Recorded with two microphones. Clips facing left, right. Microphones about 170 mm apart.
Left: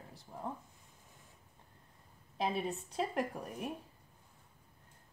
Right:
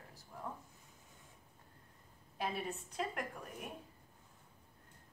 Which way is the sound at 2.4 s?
30° left (ahead or behind).